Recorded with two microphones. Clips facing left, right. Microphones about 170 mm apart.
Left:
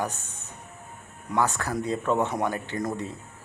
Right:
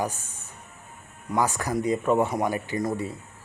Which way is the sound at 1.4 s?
10° right (ahead or behind).